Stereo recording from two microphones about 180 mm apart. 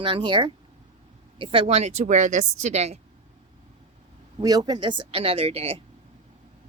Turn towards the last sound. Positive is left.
turn(degrees=-30)  # may be behind; listen again after turning